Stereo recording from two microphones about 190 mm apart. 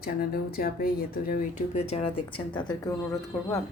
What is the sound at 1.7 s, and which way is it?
A woman's voice, 35° left (ahead or behind).